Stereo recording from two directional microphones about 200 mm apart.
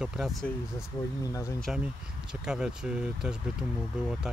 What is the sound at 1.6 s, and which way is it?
Speech, centre (ahead or behind).